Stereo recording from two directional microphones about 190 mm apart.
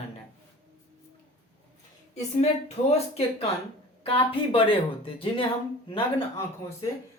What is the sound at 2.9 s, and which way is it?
Speech, 35° left (ahead or behind).